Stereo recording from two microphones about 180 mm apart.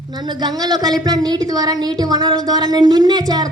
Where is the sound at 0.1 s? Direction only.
25° right (ahead or behind).